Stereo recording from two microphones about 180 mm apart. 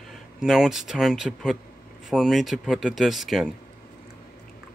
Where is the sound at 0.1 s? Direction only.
Centre (ahead or behind).